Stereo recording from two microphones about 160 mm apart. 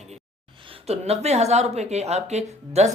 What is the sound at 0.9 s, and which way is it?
Speech, 40° right (ahead or behind).